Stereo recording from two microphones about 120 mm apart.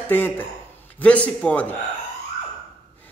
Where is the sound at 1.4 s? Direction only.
10° left (ahead or behind).